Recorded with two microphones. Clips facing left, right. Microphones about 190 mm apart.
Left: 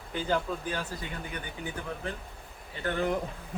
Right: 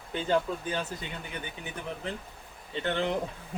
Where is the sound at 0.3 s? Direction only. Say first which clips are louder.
Right 3 dB; 25° right (ahead or behind).